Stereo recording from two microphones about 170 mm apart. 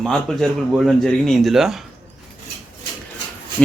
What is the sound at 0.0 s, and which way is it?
Speech, 5° left (ahead or behind).